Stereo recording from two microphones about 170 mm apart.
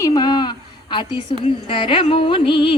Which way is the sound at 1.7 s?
30° left (ahead or behind).